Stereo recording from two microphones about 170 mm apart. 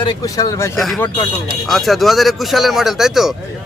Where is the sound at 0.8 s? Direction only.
Centre (ahead or behind).